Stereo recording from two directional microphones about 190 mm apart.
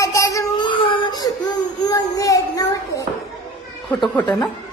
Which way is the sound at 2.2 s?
15° left (ahead or behind).